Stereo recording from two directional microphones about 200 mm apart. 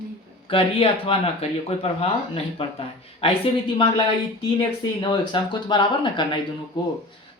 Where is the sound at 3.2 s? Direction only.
30° left (ahead or behind).